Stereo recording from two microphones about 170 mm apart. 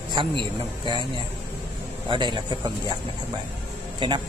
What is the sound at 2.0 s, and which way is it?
Speech, 25° right (ahead or behind).